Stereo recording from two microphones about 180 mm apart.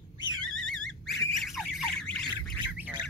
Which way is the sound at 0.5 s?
5° left (ahead or behind).